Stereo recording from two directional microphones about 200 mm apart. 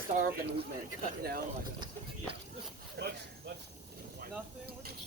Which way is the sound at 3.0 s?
55° right (ahead or behind).